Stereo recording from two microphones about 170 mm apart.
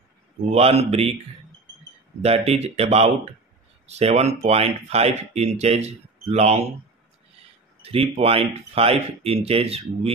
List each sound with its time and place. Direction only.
0.5 s speech: 35° right (ahead or behind)
2.2 s speech: 35° right (ahead or behind)
7.8 s speech: 35° right (ahead or behind)